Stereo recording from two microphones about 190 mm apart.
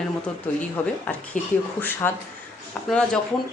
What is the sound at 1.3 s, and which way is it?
Speech, 40° left (ahead or behind).